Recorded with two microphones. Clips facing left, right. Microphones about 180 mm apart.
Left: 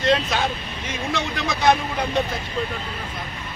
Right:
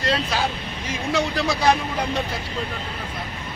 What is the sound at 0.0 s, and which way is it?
Vehicle, 35° right (ahead or behind).